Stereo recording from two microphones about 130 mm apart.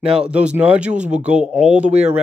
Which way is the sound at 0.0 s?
45° right (ahead or behind).